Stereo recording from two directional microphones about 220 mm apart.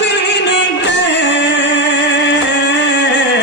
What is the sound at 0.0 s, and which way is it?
Music, 50° left (ahead or behind).